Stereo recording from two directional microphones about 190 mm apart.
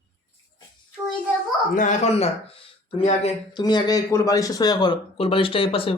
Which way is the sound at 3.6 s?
20° left (ahead or behind).